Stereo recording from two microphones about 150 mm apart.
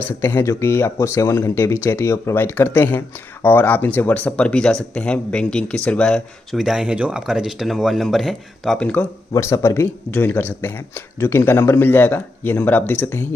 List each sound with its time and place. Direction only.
0.2 s speech: 15° left (ahead or behind)
9.3 s speech: 20° left (ahead or behind)